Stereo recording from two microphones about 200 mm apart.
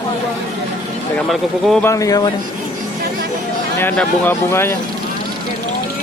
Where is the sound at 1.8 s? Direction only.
15° left (ahead or behind).